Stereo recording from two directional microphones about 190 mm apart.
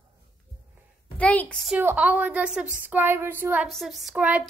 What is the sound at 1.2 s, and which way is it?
Speech, 5° left (ahead or behind).